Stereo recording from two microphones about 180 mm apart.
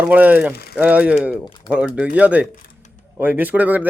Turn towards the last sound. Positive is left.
turn(degrees=-10)  # may be behind; listen again after turning